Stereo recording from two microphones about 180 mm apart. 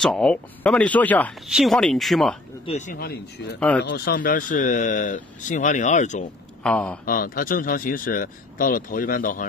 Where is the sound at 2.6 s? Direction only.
40° left (ahead or behind); by 3.5 s 60° left (ahead or behind).